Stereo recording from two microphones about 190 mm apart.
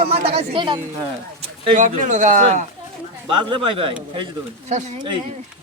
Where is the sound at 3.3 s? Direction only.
25° right (ahead or behind).